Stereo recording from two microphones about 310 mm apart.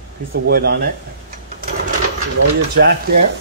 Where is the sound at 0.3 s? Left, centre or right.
Right.